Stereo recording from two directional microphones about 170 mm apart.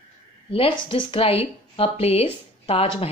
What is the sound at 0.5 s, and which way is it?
A woman's voice, 30° left (ahead or behind).